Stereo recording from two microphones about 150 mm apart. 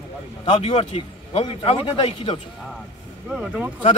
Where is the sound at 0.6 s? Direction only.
40° left (ahead or behind).